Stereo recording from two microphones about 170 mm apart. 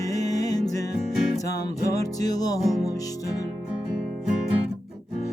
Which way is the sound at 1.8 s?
20° left (ahead or behind).